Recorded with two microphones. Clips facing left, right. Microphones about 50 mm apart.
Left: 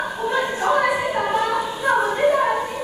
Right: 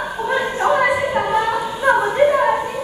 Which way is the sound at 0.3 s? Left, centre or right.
Right.